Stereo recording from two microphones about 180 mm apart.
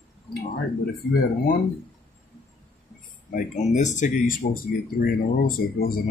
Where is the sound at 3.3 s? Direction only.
45° left (ahead or behind).